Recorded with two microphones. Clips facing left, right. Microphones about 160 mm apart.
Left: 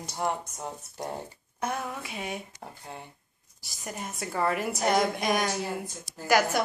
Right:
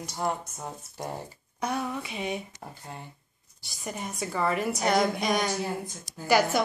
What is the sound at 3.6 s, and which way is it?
Speech, centre (ahead or behind).